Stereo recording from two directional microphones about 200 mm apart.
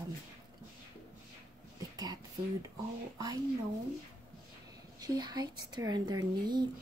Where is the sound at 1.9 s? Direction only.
20° right (ahead or behind).